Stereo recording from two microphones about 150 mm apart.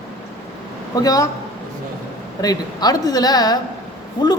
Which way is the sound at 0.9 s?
25° left (ahead or behind).